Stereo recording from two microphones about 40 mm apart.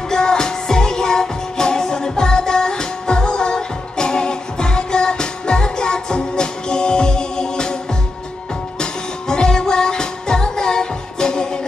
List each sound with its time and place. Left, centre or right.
0.1 s music: centre
9.3 s music: centre